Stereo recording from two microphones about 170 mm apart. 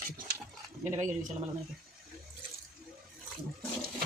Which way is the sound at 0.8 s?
45° right (ahead or behind).